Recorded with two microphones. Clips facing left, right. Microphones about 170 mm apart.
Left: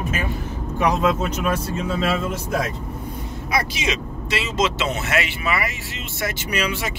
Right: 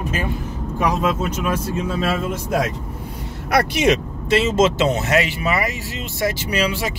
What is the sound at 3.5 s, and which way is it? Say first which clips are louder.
Speech: right 8 dB; 65° right (ahead or behind).